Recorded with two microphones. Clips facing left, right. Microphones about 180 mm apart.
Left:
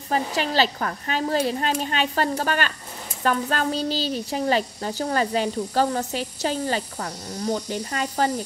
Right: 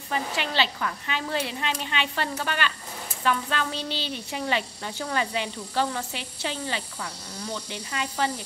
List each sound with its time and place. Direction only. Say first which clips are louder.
0.1 s speech: left 5 dB; 40° left (ahead or behind)